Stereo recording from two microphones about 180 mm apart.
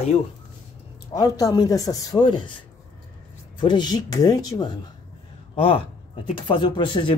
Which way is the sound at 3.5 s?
25° left (ahead or behind).